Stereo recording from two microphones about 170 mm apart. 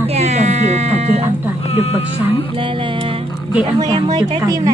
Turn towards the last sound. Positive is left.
turn(degrees=-20)  # may be behind; listen again after turning